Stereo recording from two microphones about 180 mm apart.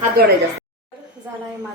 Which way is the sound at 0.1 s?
60° right (ahead or behind).